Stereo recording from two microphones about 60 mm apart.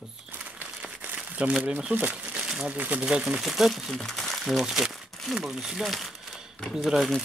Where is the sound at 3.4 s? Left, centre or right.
Centre.